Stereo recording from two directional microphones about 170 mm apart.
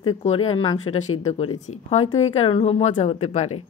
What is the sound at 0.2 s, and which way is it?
Speech, 35° left (ahead or behind).